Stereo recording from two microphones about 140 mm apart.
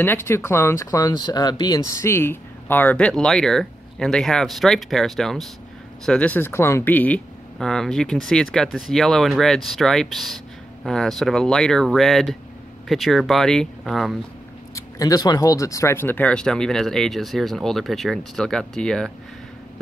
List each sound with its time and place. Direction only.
0.0 s speech: 15° left (ahead or behind); by 14.1 s centre (ahead or behind)
15.0 s speech: 25° left (ahead or behind); by 19.1 s 5° left (ahead or behind)